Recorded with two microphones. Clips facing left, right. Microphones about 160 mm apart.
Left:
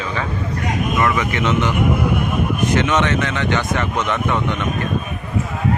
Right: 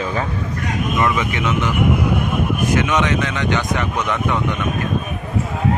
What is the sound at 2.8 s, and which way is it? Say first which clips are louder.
A man's voice: left 1 dB; 10° right (ahead or behind).